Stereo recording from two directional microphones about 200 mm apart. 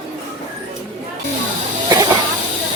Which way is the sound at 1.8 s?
15° right (ahead or behind).